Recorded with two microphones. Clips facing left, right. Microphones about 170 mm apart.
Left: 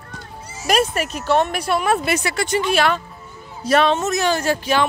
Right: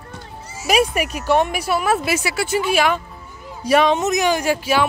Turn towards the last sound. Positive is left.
turn(degrees=-10)  # may be behind; listen again after turning